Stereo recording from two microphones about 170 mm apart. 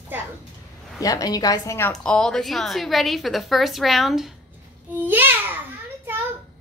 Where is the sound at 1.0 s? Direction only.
20° left (ahead or behind).